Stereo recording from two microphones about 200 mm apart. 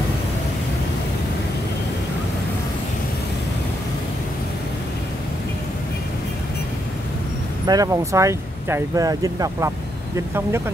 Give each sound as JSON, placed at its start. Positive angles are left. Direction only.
{"t": 7.6, "sound": "speech", "side_deg": -20}